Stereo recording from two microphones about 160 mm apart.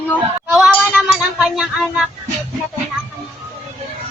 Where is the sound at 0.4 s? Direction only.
Centre (ahead or behind).